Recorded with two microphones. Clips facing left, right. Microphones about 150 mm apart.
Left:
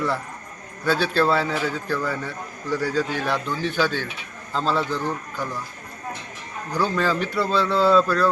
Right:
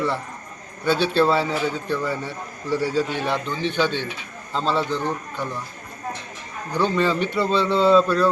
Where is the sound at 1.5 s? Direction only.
20° right (ahead or behind).